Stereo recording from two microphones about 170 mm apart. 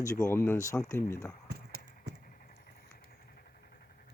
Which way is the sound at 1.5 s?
70° right (ahead or behind).